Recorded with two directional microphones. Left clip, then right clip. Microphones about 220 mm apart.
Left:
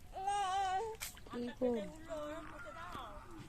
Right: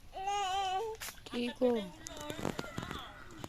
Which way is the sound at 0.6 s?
45° right (ahead or behind).